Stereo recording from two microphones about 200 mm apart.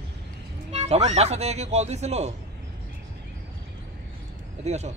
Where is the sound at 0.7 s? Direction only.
30° right (ahead or behind).